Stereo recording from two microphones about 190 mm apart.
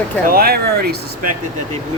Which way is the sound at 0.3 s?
50° right (ahead or behind).